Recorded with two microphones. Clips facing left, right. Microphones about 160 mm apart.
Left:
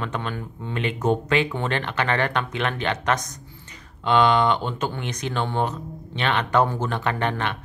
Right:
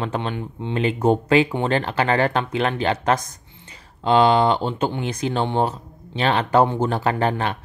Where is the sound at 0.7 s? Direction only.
30° right (ahead or behind).